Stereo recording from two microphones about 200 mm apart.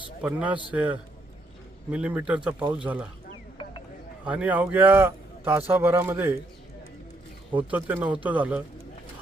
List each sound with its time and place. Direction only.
0.2 s a man's voice: 5° right (ahead or behind)
4.3 s a man's voice: 5° right (ahead or behind)
7.7 s a man's voice: 10° right (ahead or behind)